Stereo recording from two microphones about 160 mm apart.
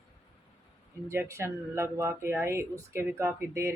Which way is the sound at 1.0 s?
15° right (ahead or behind).